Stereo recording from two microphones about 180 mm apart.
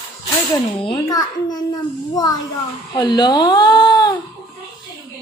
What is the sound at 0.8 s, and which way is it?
Speech, 25° left (ahead or behind).